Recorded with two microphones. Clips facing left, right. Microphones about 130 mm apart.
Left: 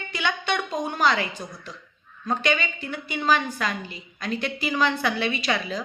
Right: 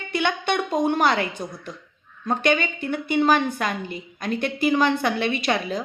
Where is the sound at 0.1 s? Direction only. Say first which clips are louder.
Right 4 dB; 55° right (ahead or behind).